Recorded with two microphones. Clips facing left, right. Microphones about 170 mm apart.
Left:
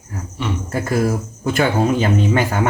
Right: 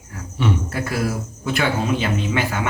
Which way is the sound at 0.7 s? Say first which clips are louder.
Left 5 dB; 45° left (ahead or behind).